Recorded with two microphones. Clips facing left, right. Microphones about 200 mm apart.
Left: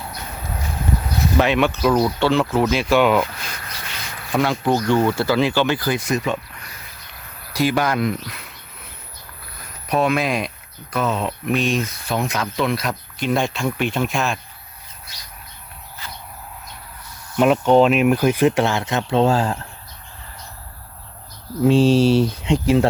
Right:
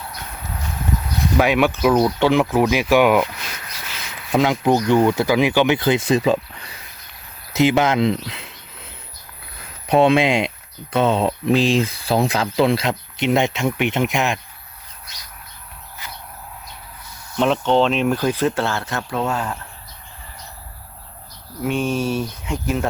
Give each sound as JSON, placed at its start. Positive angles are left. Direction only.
{"t": 1.2, "sound": "speech", "side_deg": -10}
{"t": 4.6, "sound": "speech", "side_deg": -15}
{"t": 7.5, "sound": "a sound", "side_deg": -20}
{"t": 9.8, "sound": "speech", "side_deg": -30}
{"t": 17.3, "sound": "speech", "side_deg": 10}
{"t": 21.6, "sound": "speech", "side_deg": 30}